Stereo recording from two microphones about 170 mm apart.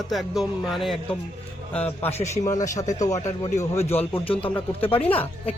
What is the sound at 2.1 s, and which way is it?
Speech, 40° left (ahead or behind).